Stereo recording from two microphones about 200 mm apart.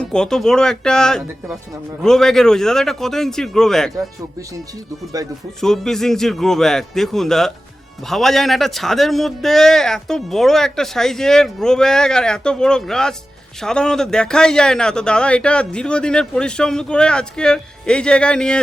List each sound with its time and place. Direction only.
0.0 s a man's voice: 5° left (ahead or behind)
5.2 s speech: 15° right (ahead or behind)
5.5 s a man's voice: centre (ahead or behind)